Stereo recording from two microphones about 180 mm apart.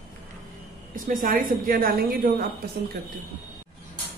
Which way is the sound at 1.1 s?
50° right (ahead or behind).